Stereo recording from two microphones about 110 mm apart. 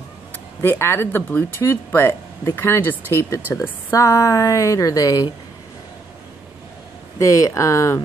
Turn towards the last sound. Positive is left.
turn(degrees=30)  # may be behind; listen again after turning